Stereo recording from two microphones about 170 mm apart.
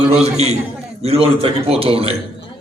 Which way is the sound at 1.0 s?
35° right (ahead or behind).